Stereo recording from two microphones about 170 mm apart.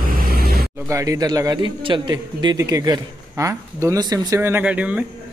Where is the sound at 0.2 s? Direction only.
60° right (ahead or behind).